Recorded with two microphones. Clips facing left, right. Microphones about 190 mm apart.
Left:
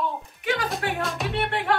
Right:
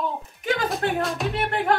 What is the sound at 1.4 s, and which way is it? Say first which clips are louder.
Speech: right 2 dB; 45° right (ahead or behind).